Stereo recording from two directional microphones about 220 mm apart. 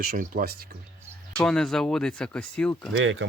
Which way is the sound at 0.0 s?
40° right (ahead or behind).